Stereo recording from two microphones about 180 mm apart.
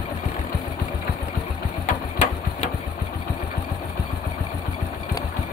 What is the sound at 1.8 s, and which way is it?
Sewing machine, 40° left (ahead or behind).